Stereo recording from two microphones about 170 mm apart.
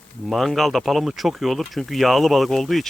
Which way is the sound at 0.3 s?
Centre (ahead or behind).